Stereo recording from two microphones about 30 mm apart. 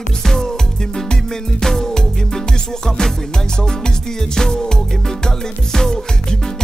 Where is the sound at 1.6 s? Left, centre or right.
Centre.